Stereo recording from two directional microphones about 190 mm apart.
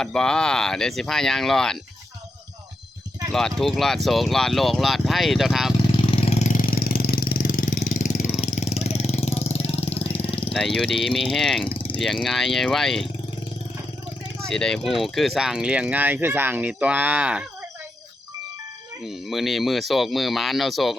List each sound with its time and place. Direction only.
0.0 s speech: 5° left (ahead or behind)
3.6 s speech: centre (ahead or behind)
6.1 s engine: 30° left (ahead or behind)
8.6 s vehicle: 35° left (ahead or behind)
10.5 s speech: 5° left (ahead or behind)
11.7 s vehicle: 25° left (ahead or behind)
12.2 s speech: centre (ahead or behind)
14.4 s speech: 5° left (ahead or behind)
19.0 s speech: centre (ahead or behind)